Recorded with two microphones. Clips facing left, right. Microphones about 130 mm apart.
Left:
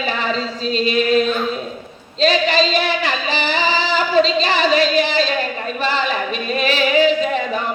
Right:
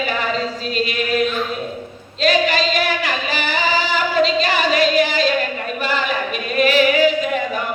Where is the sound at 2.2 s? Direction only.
25° left (ahead or behind).